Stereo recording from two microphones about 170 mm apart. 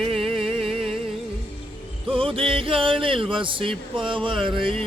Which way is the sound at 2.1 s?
30° right (ahead or behind).